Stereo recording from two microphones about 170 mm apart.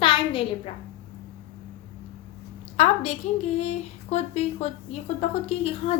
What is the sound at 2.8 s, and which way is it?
A woman's voice, 40° left (ahead or behind).